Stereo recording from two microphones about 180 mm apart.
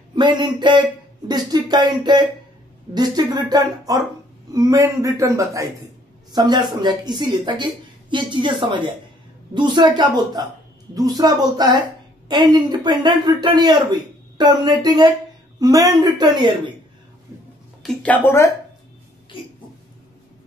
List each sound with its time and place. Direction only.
0.1 s a man's voice: 25° right (ahead or behind)
17.8 s speech: 10° left (ahead or behind)